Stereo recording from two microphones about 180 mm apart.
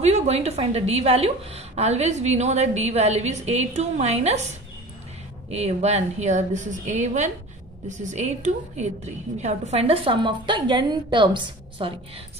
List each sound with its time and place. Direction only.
0.0 s a woman's voice: 35° right (ahead or behind)
5.5 s a woman's voice: 35° right (ahead or behind)